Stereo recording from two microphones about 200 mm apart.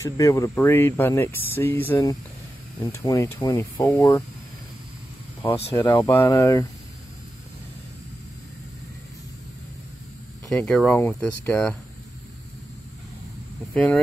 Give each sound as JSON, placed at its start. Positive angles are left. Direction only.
{"t": 0.0, "sound": "speech", "side_deg": 15}
{"t": 5.8, "sound": "speech", "side_deg": 15}
{"t": 10.5, "sound": "speech", "side_deg": 5}
{"t": 13.7, "sound": "speech", "side_deg": 5}